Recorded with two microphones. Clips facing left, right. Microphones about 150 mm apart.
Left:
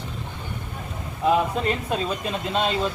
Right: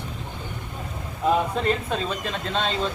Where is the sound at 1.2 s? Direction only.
5° left (ahead or behind).